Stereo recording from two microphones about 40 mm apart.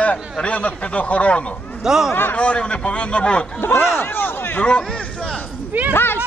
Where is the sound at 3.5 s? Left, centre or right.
Left.